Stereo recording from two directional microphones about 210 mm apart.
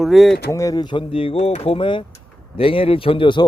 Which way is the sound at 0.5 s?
15° left (ahead or behind).